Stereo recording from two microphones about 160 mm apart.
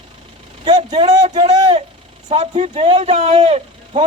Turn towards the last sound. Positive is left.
turn(degrees=-40)  # may be behind; listen again after turning